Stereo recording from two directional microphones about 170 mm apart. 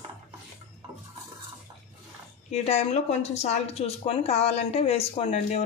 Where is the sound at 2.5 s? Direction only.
40° left (ahead or behind).